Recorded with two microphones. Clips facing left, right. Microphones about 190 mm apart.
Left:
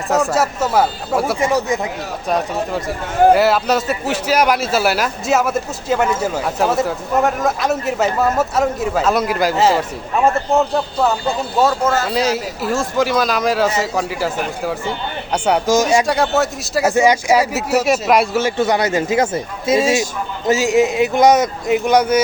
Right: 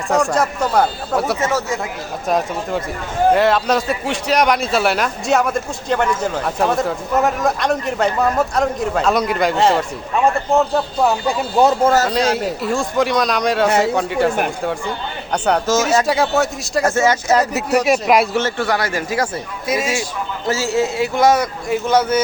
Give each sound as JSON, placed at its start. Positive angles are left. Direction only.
{"t": 0.1, "sound": "a man's voice", "side_deg": 5}
{"t": 1.5, "sound": "speech", "side_deg": 15}
{"t": 2.2, "sound": "a man's voice", "side_deg": 0}
{"t": 11.8, "sound": "speech", "side_deg": -30}
{"t": 12.1, "sound": "a man's voice", "side_deg": 0}
{"t": 16.0, "sound": "a man's voice", "side_deg": 0}
{"t": 16.9, "sound": "a man's voice", "side_deg": 15}
{"t": 18.4, "sound": "a man's voice", "side_deg": 20}